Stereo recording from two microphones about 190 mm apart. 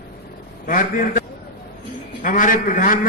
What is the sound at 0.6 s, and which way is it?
A man's voice, 45° left (ahead or behind).